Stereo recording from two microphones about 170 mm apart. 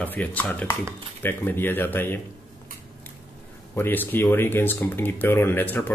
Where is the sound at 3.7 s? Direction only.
10° left (ahead or behind).